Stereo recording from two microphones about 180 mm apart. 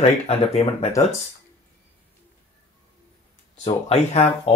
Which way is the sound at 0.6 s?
30° left (ahead or behind).